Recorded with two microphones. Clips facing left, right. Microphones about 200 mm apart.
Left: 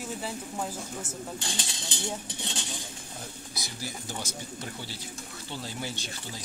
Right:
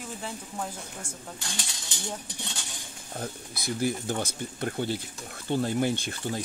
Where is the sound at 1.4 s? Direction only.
25° left (ahead or behind).